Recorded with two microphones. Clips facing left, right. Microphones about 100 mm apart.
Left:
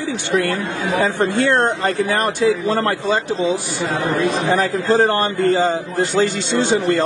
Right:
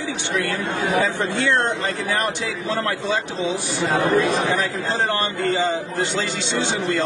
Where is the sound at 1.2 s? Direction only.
45° left (ahead or behind).